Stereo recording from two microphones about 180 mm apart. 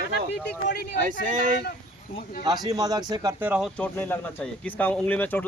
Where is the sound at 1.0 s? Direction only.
45° right (ahead or behind).